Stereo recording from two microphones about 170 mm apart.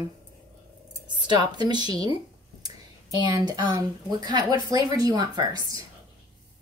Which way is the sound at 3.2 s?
20° right (ahead or behind).